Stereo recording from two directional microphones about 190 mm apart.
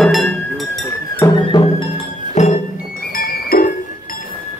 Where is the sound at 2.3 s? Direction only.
40° left (ahead or behind).